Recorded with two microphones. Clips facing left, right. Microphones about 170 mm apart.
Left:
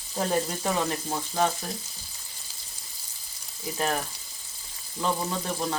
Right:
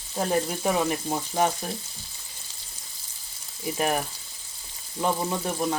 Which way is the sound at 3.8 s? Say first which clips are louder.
Right 2 dB; 15° right (ahead or behind).